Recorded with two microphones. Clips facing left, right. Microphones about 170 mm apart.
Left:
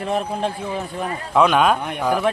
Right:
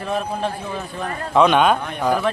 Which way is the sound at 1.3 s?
Centre (ahead or behind).